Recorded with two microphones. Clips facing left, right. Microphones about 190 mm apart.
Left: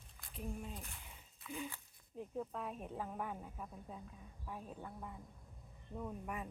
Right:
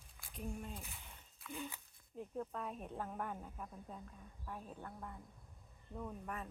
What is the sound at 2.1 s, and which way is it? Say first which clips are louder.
Speech: left 1 dB; 5° left (ahead or behind).